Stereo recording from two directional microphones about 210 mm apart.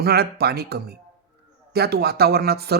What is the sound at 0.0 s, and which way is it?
Speech, 50° right (ahead or behind).